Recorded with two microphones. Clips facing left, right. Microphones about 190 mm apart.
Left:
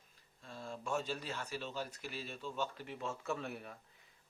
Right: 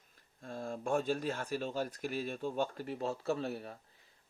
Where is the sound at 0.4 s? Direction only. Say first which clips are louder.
Right 6 dB; 50° right (ahead or behind).